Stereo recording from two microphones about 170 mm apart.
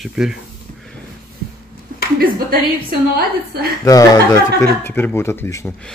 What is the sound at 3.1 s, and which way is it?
Speech, 65° right (ahead or behind).